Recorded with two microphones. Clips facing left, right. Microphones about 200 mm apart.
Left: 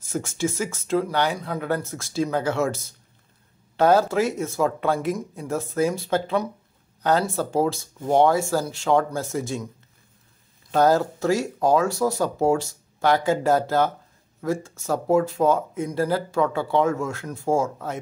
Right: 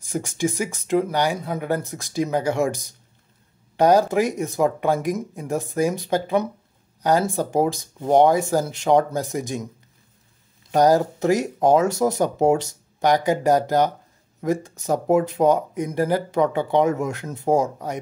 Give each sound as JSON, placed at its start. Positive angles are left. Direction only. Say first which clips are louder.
{"t": 0.0, "sound": "speech", "louder": "right 2 dB", "side_deg": -15}
{"t": 10.7, "sound": "speech", "louder": "right 2 dB", "side_deg": -15}